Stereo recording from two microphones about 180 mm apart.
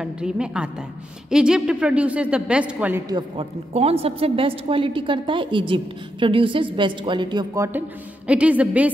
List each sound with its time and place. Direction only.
0.0 s a woman's voice: 5° right (ahead or behind)
3.1 s a woman's voice: 25° right (ahead or behind); by 8.9 s 10° right (ahead or behind)